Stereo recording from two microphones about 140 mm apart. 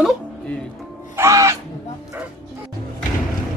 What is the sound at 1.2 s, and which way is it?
Music, 20° right (ahead or behind).